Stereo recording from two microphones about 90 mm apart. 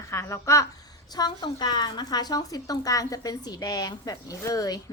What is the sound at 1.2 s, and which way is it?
A woman's voice, 50° left (ahead or behind).